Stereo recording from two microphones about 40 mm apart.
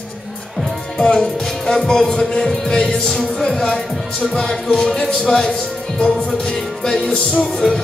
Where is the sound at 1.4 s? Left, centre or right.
Centre.